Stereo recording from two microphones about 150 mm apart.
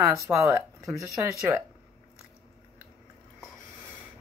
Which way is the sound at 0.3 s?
20° right (ahead or behind).